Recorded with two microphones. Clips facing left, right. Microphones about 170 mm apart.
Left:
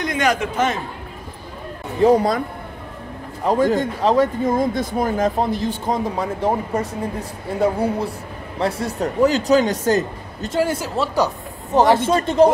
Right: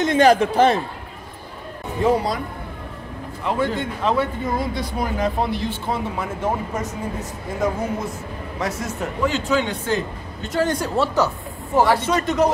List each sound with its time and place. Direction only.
0.0 s speech: 30° right (ahead or behind)
2.0 s a man's voice: 50° left (ahead or behind)
3.4 s speech: 40° left (ahead or behind)
10.6 s a man's voice: 5° left (ahead or behind)
11.7 s speech: 20° left (ahead or behind)